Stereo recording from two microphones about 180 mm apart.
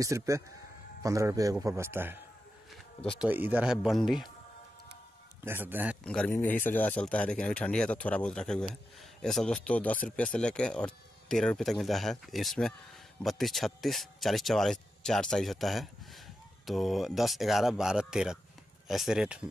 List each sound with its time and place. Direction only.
0.0 s a man's voice: 15° right (ahead or behind)
3.2 s speech: 10° right (ahead or behind)
5.4 s a man's voice: 10° right (ahead or behind)
6.0 s speech: 5° left (ahead or behind)